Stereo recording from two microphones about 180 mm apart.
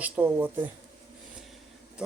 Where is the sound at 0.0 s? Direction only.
10° right (ahead or behind).